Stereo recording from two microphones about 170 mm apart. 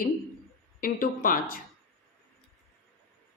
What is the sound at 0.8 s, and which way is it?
Speech, 55° left (ahead or behind).